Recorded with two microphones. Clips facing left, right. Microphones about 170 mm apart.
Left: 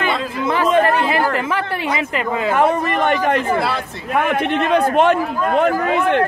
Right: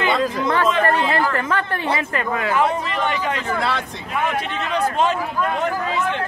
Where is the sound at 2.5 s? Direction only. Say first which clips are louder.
Left 5 dB; 55° left (ahead or behind).